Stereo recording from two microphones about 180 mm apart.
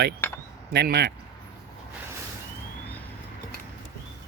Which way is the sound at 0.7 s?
65° right (ahead or behind).